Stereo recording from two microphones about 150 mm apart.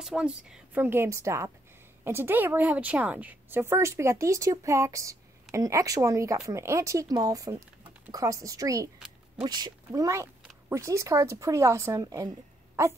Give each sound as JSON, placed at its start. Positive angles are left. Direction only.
{"t": 0.0, "sound": "a woman's voice", "side_deg": -5}